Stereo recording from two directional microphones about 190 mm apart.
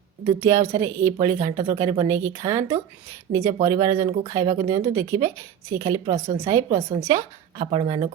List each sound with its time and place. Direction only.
0.3 s a woman's voice: 15° right (ahead or behind)
4.1 s speech: 35° right (ahead or behind)
4.4 s a woman's voice: 15° right (ahead or behind)
6.1 s speech: 30° right (ahead or behind)
6.4 s a woman's voice: 15° right (ahead or behind)